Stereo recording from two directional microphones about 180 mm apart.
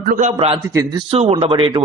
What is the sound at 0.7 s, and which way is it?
Speech, 25° right (ahead or behind).